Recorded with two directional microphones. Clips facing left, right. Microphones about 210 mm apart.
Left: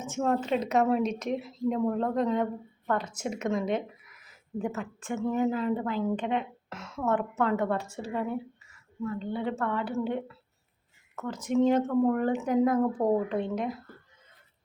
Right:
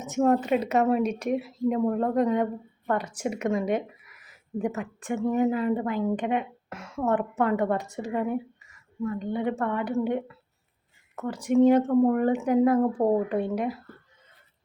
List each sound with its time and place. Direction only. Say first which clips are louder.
0.3 s a woman's voice: right 3 dB; 10° right (ahead or behind)
11.3 s a woman's voice: right 5 dB; 15° right (ahead or behind)